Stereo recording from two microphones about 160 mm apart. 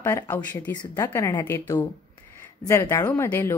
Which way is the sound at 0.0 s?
15° left (ahead or behind).